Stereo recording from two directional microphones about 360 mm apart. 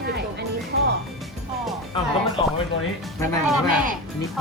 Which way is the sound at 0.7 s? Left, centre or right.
Right.